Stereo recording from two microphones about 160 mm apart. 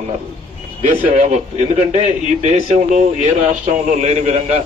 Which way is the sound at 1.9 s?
45° right (ahead or behind).